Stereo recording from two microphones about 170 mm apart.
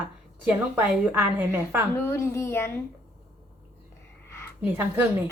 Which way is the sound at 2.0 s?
15° left (ahead or behind).